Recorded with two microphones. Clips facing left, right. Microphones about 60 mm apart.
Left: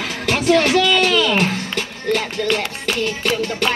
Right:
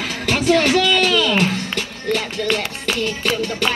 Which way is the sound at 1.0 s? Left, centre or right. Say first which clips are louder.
Even; left.